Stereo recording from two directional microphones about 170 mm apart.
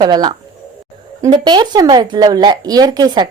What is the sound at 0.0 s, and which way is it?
Speech, 25° right (ahead or behind).